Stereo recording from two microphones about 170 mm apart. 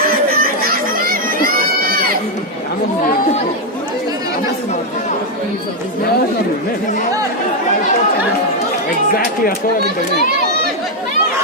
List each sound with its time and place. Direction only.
0.3 s crowd: 60° right (ahead or behind)